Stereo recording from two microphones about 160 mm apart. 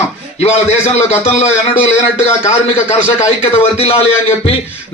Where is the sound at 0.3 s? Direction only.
40° left (ahead or behind).